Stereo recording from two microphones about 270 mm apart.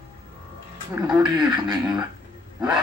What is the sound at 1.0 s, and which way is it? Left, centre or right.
Beatboxing, centre.